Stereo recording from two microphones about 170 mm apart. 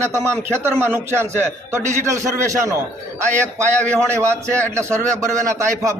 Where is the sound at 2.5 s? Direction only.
20° right (ahead or behind).